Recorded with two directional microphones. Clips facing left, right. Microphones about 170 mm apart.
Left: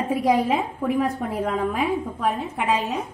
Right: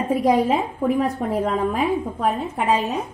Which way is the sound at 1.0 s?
35° right (ahead or behind).